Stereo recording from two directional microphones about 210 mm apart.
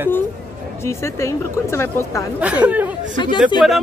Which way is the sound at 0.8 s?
15° left (ahead or behind).